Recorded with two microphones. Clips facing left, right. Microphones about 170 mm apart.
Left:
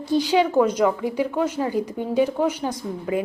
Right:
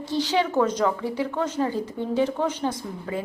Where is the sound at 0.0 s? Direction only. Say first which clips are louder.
Left 4 dB; 15° left (ahead or behind).